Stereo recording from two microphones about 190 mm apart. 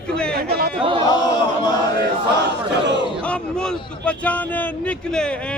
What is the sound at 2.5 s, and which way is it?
Speech, 65° right (ahead or behind).